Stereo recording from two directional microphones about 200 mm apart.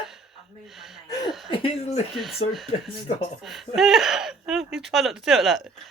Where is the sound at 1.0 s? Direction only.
20° left (ahead or behind).